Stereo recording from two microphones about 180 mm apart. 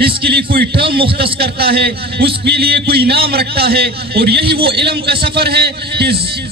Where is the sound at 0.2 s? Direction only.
65° right (ahead or behind).